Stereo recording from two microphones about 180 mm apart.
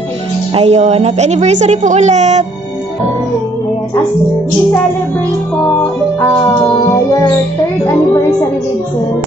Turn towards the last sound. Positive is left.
turn(degrees=20)  # may be behind; listen again after turning